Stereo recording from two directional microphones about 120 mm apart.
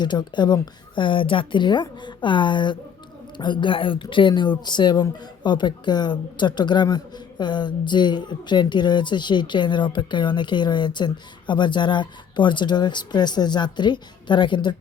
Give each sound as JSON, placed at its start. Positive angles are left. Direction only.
{"t": 0.0, "sound": "speech", "side_deg": 40}